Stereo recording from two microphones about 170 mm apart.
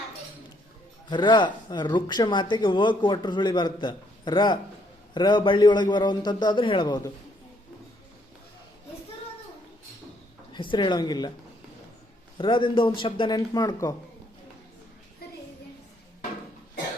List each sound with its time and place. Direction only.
1.1 s speech: 25° left (ahead or behind)
10.5 s speech: 30° left (ahead or behind)
12.4 s speech: 30° left (ahead or behind)